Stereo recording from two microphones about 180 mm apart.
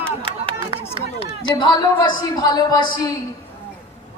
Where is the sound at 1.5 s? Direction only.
25° left (ahead or behind).